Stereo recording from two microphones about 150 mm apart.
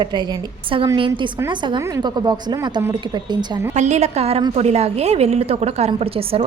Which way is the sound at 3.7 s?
50° right (ahead or behind).